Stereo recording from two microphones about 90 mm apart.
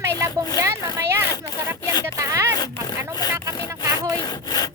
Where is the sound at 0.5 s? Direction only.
35° right (ahead or behind).